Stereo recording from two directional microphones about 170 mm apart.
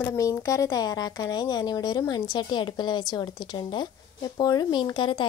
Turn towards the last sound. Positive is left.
turn(degrees=25)  # may be behind; listen again after turning